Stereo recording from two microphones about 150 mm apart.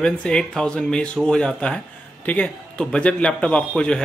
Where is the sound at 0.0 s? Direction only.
5° left (ahead or behind).